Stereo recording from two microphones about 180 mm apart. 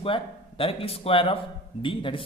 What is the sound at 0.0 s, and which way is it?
A man's voice, 30° left (ahead or behind).